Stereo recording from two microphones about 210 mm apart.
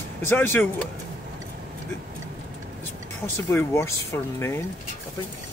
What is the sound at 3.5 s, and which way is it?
Speech, 10° left (ahead or behind).